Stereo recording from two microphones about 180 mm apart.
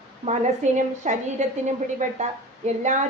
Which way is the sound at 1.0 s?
40° right (ahead or behind).